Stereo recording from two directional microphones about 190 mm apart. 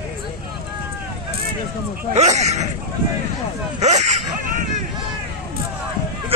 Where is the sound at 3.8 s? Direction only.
35° right (ahead or behind).